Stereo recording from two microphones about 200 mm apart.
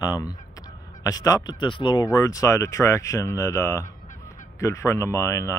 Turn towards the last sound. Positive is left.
turn(degrees=15)  # may be behind; listen again after turning